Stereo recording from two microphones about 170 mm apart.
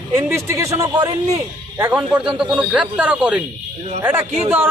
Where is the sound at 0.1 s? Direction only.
15° right (ahead or behind).